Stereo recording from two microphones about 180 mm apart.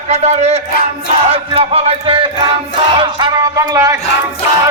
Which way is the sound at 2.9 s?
25° right (ahead or behind).